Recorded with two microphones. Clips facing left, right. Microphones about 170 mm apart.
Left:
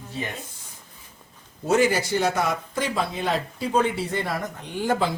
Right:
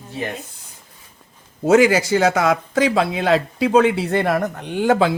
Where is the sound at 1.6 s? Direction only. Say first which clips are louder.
Right 7 dB; 90° right.